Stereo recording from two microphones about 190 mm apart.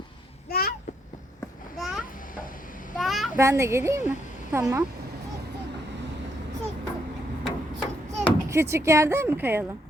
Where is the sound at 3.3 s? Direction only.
15° right (ahead or behind).